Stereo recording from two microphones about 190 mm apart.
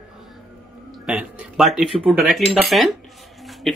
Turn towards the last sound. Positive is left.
turn(degrees=0)  # may be behind; listen again after turning